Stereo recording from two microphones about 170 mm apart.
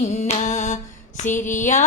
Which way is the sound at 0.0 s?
40° left (ahead or behind).